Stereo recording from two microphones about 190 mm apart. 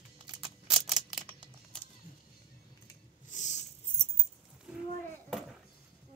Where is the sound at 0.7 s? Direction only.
Centre (ahead or behind).